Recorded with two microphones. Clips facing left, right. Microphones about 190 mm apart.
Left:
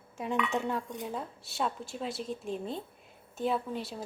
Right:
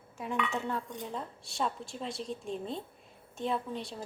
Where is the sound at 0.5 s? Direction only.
10° left (ahead or behind).